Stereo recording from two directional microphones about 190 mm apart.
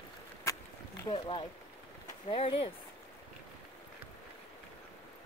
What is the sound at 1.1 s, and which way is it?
Speech, 25° left (ahead or behind).